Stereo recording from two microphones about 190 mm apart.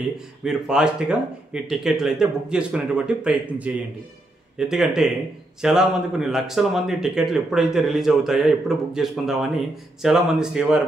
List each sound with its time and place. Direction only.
0.4 s speech: 5° right (ahead or behind)